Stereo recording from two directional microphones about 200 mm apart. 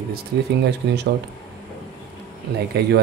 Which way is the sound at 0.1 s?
55° right (ahead or behind).